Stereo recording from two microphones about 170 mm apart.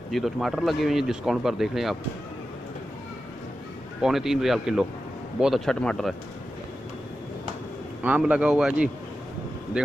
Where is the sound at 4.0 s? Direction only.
Centre (ahead or behind).